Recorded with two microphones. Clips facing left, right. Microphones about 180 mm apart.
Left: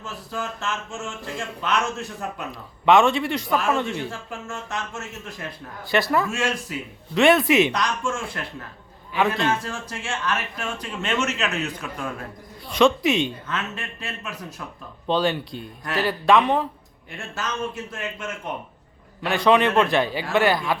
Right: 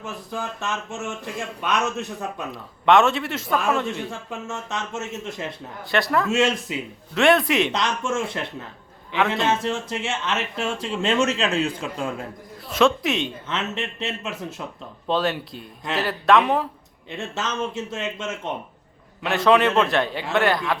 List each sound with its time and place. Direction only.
0.0 s speech: 15° right (ahead or behind)
2.5 s a man's voice: centre (ahead or behind)
4.1 s speech: 20° right (ahead or behind)
5.9 s a man's voice: centre (ahead or behind)
6.3 s speech: 20° right (ahead or behind)
7.1 s a man's voice: centre (ahead or behind)
7.7 s speech: 25° right (ahead or behind)
12.7 s a man's voice: centre (ahead or behind)
13.5 s speech: 25° right (ahead or behind)
15.0 s a man's voice: centre (ahead or behind)
17.1 s speech: 20° right (ahead or behind)
19.2 s a man's voice: centre (ahead or behind)